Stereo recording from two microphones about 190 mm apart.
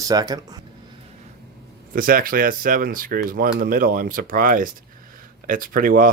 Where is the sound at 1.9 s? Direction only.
50° right (ahead or behind).